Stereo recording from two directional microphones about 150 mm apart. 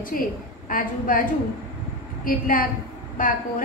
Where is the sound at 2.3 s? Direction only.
70° left (ahead or behind).